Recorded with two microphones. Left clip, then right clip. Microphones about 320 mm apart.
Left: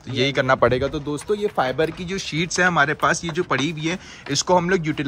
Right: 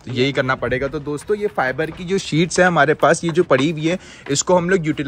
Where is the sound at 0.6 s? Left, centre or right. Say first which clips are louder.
Left 3 dB; centre.